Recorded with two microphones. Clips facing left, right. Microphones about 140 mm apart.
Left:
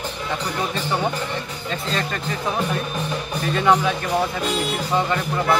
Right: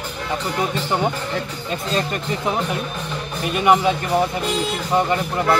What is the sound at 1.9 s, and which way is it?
A man's voice, 20° right (ahead or behind).